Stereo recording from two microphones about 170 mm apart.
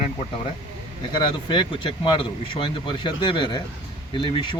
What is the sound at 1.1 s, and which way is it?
Speech, 30° left (ahead or behind).